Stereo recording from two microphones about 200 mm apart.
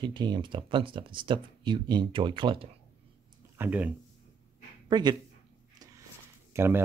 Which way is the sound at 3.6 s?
10° right (ahead or behind).